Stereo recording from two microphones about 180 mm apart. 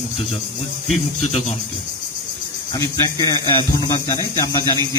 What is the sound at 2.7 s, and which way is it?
Speech, 20° left (ahead or behind).